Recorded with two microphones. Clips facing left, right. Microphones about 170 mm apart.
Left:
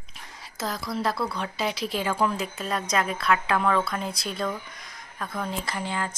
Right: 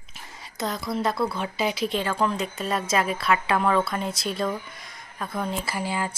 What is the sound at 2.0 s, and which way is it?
A woman's voice, 10° left (ahead or behind).